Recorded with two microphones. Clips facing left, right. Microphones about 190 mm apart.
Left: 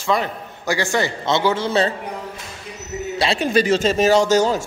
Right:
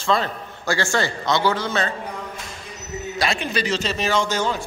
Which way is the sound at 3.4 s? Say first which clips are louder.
Left 7 dB; 50° left (ahead or behind).